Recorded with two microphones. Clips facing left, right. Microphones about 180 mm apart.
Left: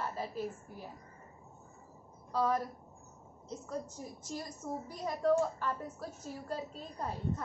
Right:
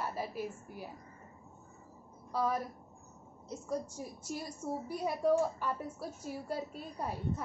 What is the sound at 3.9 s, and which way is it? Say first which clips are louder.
A woman's voice: right 1 dB; 10° right (ahead or behind).